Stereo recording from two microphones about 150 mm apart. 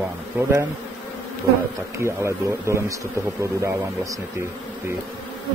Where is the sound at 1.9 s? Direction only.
20° right (ahead or behind).